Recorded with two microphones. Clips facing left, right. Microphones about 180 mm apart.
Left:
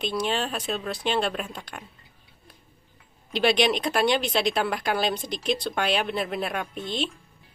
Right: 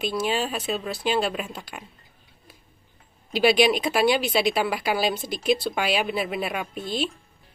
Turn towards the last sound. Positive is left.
turn(degrees=-5)  # may be behind; listen again after turning